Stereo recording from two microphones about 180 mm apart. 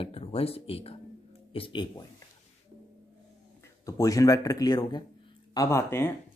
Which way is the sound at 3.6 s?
15° left (ahead or behind).